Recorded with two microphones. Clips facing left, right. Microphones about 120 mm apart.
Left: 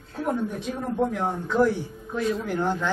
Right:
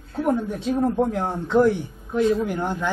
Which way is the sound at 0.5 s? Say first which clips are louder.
Right 5 dB; 30° right (ahead or behind).